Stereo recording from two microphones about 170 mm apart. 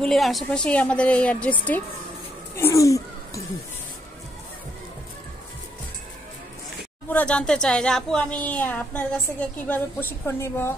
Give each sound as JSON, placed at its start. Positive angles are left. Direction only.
{"t": 0.0, "sound": "a woman's voice", "side_deg": 0}
{"t": 7.1, "sound": "a woman's voice", "side_deg": 10}